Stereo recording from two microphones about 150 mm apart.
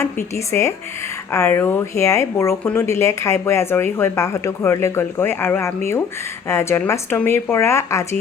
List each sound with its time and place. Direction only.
0.0 s speech: 20° left (ahead or behind)